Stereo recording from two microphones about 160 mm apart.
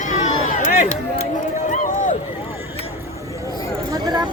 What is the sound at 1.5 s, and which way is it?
Run, 50° left (ahead or behind).